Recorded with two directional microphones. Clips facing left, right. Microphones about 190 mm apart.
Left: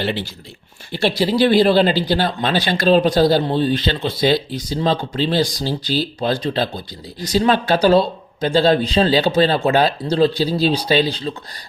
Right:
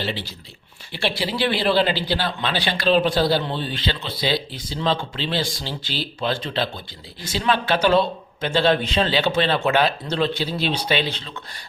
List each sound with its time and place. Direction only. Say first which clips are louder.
0.0 s speech: left 5 dB; 55° left (ahead or behind)
0.9 s speech: left 7 dB; 40° left (ahead or behind)